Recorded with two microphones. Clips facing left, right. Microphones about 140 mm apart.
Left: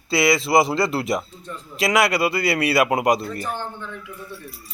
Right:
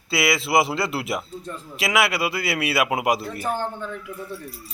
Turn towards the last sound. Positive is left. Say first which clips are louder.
# left 3 dB
turn(degrees=-5)  # may be behind; listen again after turning